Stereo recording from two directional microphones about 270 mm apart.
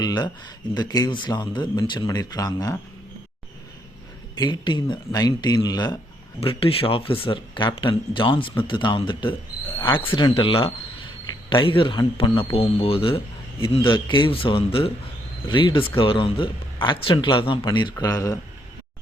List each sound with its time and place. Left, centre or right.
0.0 s speech: centre
4.4 s speech: centre